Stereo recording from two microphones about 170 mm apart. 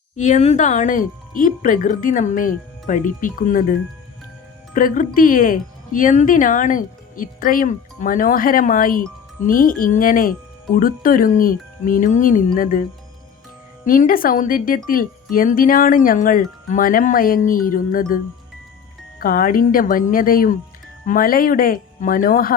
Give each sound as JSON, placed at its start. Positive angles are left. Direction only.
{"t": 0.2, "sound": "speech", "side_deg": 45}
{"t": 13.8, "sound": "speech", "side_deg": 55}
{"t": 19.2, "sound": "speech", "side_deg": 55}